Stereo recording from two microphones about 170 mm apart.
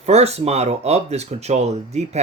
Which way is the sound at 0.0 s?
40° right (ahead or behind).